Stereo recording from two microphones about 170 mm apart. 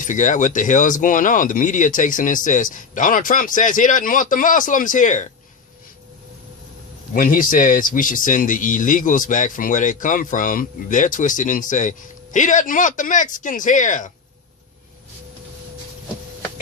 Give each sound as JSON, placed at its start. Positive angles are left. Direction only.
{"t": 0.0, "sound": "speech", "side_deg": 50}
{"t": 7.1, "sound": "speech", "side_deg": 55}